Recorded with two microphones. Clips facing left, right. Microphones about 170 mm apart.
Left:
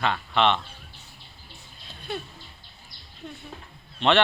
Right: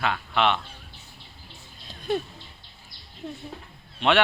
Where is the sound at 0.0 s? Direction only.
5° right (ahead or behind).